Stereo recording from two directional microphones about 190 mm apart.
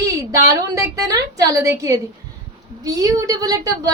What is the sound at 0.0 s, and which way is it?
A woman's voice, 20° right (ahead or behind).